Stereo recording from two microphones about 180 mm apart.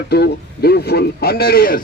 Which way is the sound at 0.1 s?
60° left (ahead or behind).